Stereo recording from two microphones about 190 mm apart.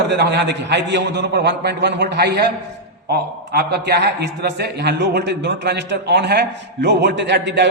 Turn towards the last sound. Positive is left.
turn(degrees=-65)  # may be behind; listen again after turning